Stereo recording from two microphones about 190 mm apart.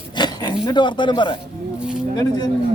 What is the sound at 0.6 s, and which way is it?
Speech, 25° left (ahead or behind).